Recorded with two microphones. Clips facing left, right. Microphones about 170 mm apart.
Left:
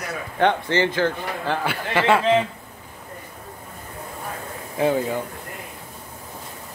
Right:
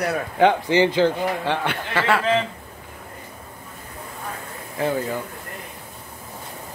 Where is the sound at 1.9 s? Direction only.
15° left (ahead or behind).